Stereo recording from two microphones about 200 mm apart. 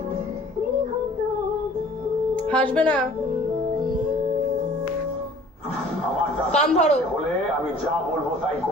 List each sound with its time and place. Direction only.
2.3 s speech: 5° left (ahead or behind)
3.8 s music: 45° right (ahead or behind)
6.5 s a man's voice: 35° left (ahead or behind)